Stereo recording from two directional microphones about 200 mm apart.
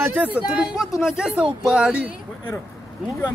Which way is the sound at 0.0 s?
10° right (ahead or behind).